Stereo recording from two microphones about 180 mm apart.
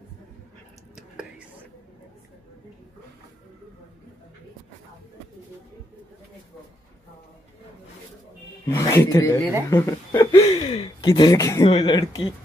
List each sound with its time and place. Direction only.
8.6 s speech: 15° left (ahead or behind)
10.3 s speech: 35° left (ahead or behind)
11.6 s speech: 30° left (ahead or behind)